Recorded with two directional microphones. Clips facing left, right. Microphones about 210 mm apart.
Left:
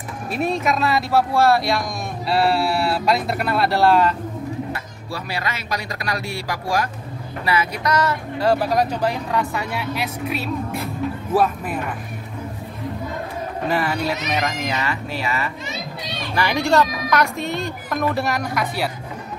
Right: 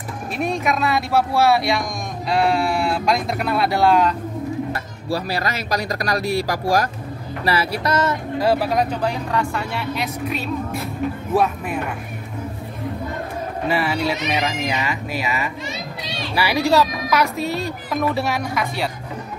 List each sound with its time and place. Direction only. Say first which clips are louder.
0.4 s speech: left 1 dB; centre (ahead or behind)
5.1 s speech: right 5 dB; 40° right (ahead or behind)
8.4 s speech: even; 5° right (ahead or behind)
13.7 s speech: right 1 dB; centre (ahead or behind)
17.4 s speech: right 2 dB; 35° right (ahead or behind)
17.8 s speech: even; centre (ahead or behind)